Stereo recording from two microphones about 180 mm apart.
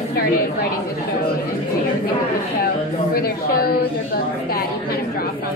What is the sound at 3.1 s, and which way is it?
A woman's voice, 60° left (ahead or behind).